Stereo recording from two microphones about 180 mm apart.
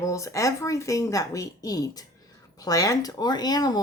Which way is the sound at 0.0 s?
15° left (ahead or behind).